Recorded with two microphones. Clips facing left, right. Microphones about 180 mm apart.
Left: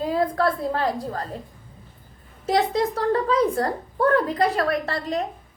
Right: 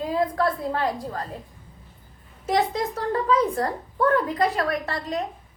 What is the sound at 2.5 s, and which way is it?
A woman's voice, 35° left (ahead or behind).